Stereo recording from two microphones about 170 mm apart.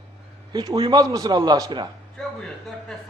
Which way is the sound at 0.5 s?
25° right (ahead or behind).